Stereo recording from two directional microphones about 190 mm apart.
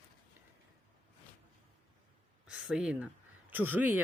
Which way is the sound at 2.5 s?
5° right (ahead or behind).